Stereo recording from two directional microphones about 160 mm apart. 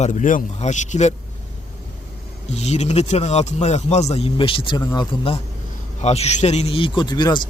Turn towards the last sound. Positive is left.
turn(degrees=25)  # may be behind; listen again after turning